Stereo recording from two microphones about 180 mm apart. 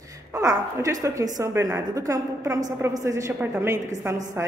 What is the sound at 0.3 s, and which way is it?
A woman's voice, 15° right (ahead or behind).